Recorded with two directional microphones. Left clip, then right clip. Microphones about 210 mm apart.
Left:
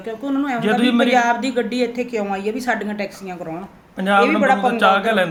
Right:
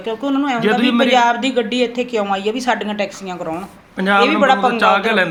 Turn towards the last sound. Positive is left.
turn(degrees=5)  # may be behind; listen again after turning